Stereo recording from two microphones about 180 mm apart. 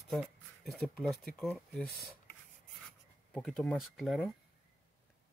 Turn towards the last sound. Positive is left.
turn(degrees=0)  # may be behind; listen again after turning